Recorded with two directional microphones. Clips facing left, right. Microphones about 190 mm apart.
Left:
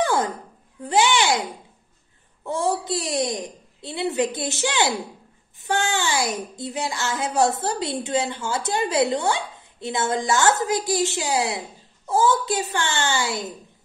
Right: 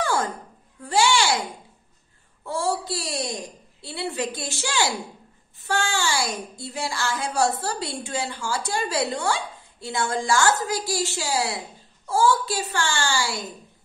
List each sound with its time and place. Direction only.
0.0 s a sound: 20° left (ahead or behind)
0.8 s babbling: 20° left (ahead or behind)
2.4 s a child's voice: 20° left (ahead or behind)